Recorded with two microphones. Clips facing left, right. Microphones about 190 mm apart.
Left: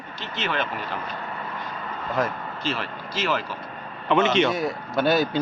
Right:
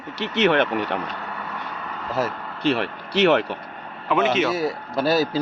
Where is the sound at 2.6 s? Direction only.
65° right (ahead or behind).